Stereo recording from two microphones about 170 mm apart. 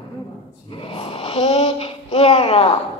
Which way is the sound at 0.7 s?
30° left (ahead or behind).